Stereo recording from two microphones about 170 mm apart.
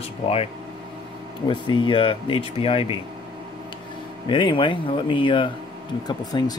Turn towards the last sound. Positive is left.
turn(degrees=25)  # may be behind; listen again after turning